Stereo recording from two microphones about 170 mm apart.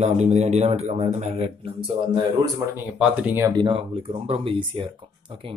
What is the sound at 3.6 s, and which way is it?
Speech, 30° right (ahead or behind).